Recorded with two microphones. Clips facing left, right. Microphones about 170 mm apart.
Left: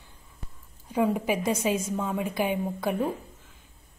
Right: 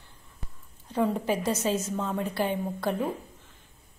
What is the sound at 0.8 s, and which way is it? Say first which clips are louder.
A woman's voice: left 1 dB; 10° left (ahead or behind).